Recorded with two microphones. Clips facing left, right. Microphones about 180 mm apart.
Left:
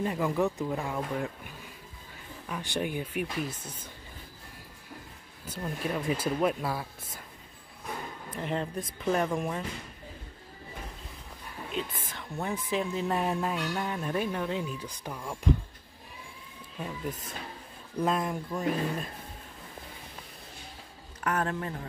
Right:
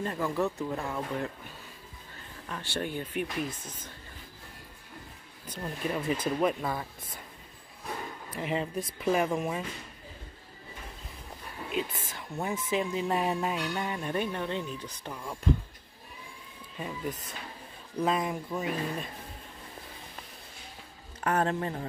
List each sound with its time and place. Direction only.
0.0 s speech: 15° left (ahead or behind)
2.4 s speech: 10° left (ahead or behind)
5.5 s speech: centre (ahead or behind)
8.4 s speech: 5° right (ahead or behind)
11.7 s speech: centre (ahead or behind)
16.7 s speech: centre (ahead or behind)
21.2 s speech: 30° right (ahead or behind)